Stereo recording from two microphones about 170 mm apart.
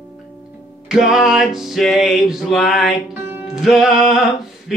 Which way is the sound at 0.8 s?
5° right (ahead or behind).